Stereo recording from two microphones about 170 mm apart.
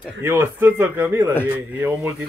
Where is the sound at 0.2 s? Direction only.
15° right (ahead or behind).